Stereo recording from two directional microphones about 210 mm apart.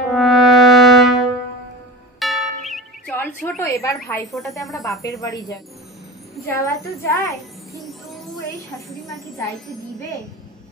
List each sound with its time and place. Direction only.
0.1 s brass instrument: centre (ahead or behind)
2.1 s music: centre (ahead or behind)
3.2 s a woman's voice: 10° left (ahead or behind)
4.6 s speech: centre (ahead or behind)
5.0 s a woman's voice: 15° left (ahead or behind)